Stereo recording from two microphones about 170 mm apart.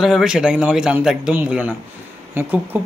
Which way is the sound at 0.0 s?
5° right (ahead or behind).